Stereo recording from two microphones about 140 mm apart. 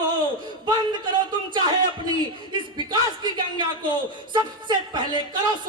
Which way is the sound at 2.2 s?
35° right (ahead or behind).